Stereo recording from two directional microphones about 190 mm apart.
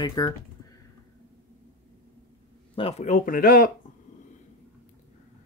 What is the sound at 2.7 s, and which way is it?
Speech, 35° left (ahead or behind).